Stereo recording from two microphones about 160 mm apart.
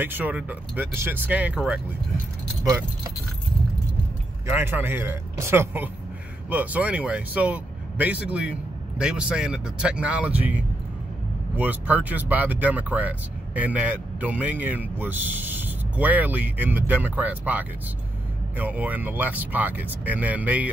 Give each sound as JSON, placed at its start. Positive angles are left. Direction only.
{"t": 0.0, "sound": "speech", "side_deg": -10}
{"t": 2.6, "sound": "speech", "side_deg": -20}
{"t": 4.5, "sound": "speech", "side_deg": -15}